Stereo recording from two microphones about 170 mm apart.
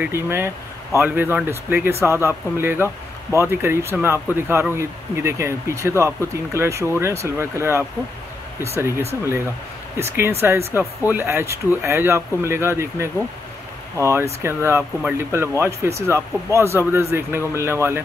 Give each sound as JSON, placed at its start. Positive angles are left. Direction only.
{"t": 0.0, "sound": "a man's voice", "side_deg": -15}